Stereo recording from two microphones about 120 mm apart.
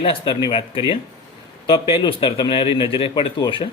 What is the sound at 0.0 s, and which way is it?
A man's voice, 50° left (ahead or behind).